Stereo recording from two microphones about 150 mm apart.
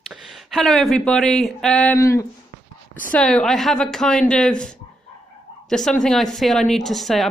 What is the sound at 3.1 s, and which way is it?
A woman's voice, 5° left (ahead or behind).